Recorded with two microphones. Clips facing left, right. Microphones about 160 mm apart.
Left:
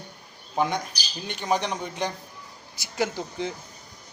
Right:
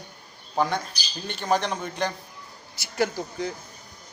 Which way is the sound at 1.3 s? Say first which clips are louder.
Right 1 dB; 15° left (ahead or behind).